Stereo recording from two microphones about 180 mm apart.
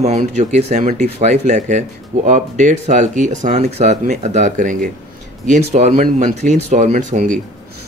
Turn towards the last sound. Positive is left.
turn(degrees=-45)  # may be behind; listen again after turning